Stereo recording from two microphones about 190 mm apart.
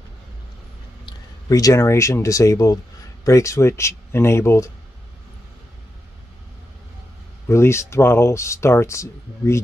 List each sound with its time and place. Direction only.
1.0 s speech: 20° left (ahead or behind)
7.4 s speech: 15° left (ahead or behind)